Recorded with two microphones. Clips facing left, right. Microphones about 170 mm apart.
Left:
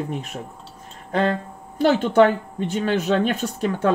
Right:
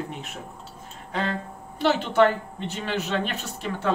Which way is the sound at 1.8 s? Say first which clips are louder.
Left 4 dB; 50° left (ahead or behind).